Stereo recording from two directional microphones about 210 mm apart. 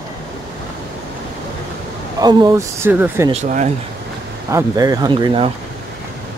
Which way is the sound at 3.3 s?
35° right (ahead or behind).